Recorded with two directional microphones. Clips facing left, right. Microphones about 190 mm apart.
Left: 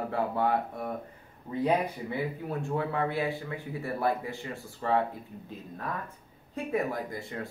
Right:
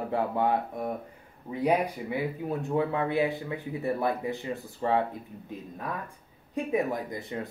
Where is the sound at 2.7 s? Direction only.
20° right (ahead or behind).